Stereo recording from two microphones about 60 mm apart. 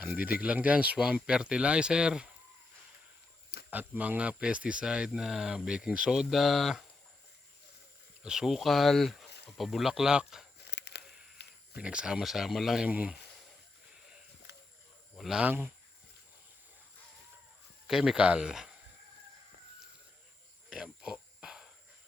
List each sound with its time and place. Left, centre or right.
0.0 s speech: right
3.7 s speech: right; by 6.8 s centre
8.2 s speech: centre
11.8 s speech: centre
12.2 s speech: centre
15.4 s speech: right
17.8 s speech: centre
20.7 s a sound: centre